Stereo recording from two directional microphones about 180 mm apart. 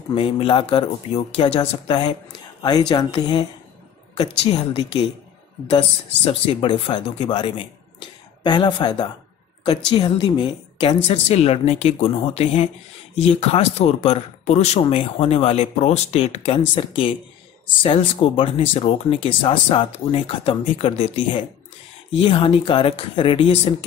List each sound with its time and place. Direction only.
0.1 s speech: 30° left (ahead or behind)
11.1 s speech: 35° left (ahead or behind)